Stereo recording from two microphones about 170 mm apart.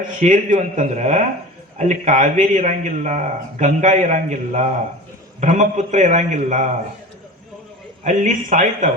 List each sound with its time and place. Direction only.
0.2 s a man's voice: 50° right (ahead or behind)
8.0 s a man's voice: 50° right (ahead or behind)